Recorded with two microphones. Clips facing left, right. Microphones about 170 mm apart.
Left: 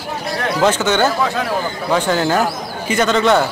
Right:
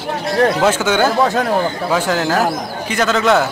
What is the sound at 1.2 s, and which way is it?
Speech, 45° right (ahead or behind).